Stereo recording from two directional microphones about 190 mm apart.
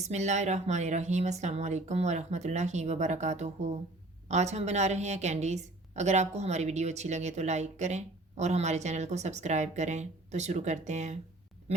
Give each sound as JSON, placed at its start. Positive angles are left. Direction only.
{"t": 0.1, "sound": "a woman's voice", "side_deg": -35}